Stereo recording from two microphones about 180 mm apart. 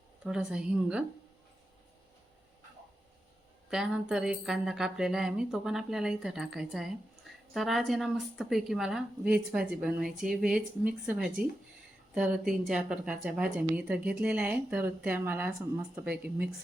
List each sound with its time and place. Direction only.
0.3 s a woman's voice: 5° right (ahead or behind)
3.7 s a woman's voice: 5° right (ahead or behind)